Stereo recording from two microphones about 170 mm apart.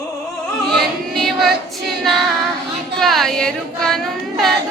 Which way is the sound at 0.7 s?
Centre (ahead or behind).